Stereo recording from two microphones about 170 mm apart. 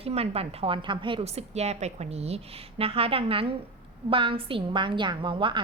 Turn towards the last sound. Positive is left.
turn(degrees=-30)  # may be behind; listen again after turning